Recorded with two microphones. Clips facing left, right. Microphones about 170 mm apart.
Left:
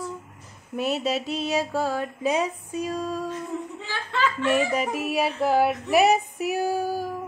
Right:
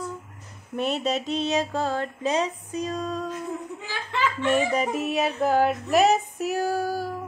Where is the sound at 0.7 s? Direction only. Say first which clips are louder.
Even; 5° left (ahead or behind).